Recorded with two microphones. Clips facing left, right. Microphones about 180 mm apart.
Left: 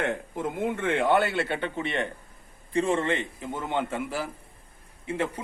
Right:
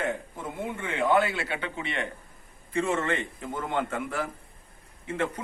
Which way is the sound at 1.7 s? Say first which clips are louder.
Left 4 dB; 50° left (ahead or behind).